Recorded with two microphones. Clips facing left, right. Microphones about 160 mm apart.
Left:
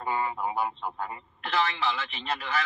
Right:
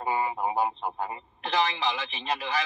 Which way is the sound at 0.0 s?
15° right (ahead or behind).